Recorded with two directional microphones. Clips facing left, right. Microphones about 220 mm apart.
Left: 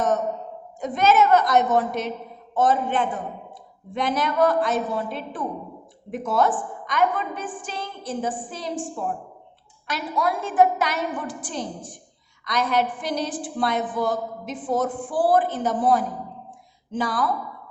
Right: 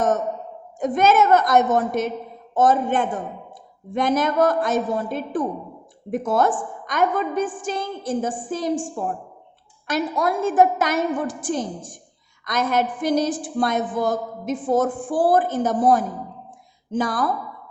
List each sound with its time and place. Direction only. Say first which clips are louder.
0.8 s a woman's voice: right 2 dB; 50° right (ahead or behind)